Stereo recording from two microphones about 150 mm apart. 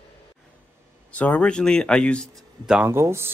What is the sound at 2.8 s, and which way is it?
Speech, 15° right (ahead or behind).